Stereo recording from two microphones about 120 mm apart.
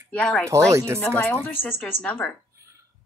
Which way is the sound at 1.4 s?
15° left (ahead or behind).